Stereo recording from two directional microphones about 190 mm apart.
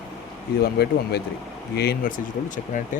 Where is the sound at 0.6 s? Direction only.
60° left (ahead or behind).